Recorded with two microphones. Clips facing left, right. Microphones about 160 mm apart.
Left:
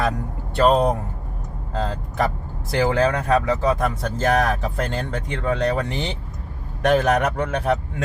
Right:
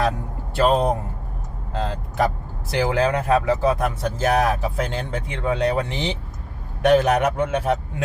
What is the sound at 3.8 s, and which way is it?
A man's voice, 5° right (ahead or behind).